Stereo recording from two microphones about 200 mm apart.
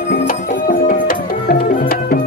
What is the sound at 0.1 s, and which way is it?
Music, 45° left (ahead or behind).